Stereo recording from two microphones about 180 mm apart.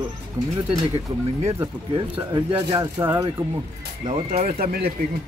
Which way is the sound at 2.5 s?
15° right (ahead or behind).